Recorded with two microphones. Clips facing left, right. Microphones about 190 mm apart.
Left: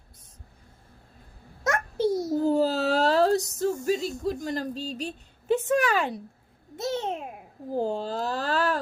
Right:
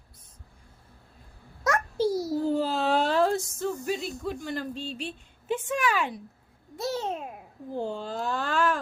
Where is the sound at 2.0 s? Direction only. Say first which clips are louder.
Left 2 dB; 25° left (ahead or behind).